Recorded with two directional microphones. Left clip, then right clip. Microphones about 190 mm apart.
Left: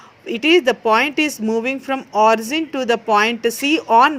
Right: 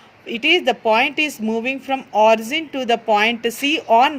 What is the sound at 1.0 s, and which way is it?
Speech, 45° left (ahead or behind).